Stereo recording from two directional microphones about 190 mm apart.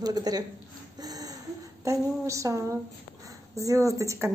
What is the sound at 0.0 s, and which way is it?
Speech, 20° right (ahead or behind).